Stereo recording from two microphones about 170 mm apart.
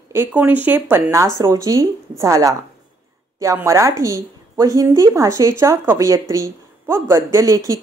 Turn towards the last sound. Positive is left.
turn(degrees=-20)  # may be behind; listen again after turning